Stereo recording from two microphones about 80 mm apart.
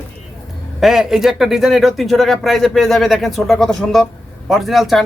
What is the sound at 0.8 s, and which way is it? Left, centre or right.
Speech, centre.